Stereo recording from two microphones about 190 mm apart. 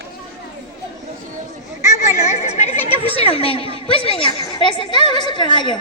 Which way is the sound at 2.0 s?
35° left (ahead or behind).